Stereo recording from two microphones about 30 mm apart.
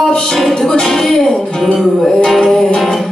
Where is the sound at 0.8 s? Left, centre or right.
Centre.